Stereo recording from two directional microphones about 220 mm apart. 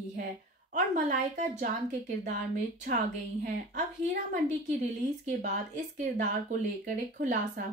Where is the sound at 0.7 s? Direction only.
35° right (ahead or behind).